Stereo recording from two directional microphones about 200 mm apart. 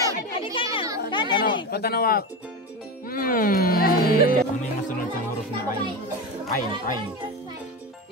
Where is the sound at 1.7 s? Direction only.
50° left (ahead or behind).